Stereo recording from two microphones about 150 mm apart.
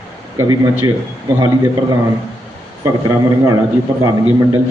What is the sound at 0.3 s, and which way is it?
Speech, 20° right (ahead or behind).